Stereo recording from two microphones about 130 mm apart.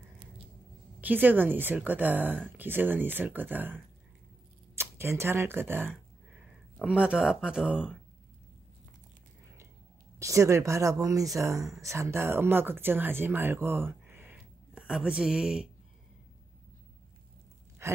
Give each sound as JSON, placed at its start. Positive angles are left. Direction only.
{"t": 1.0, "sound": "a woman's voice", "side_deg": -15}
{"t": 10.1, "sound": "speech", "side_deg": -25}